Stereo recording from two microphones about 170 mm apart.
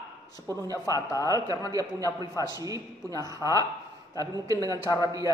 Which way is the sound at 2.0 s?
20° left (ahead or behind).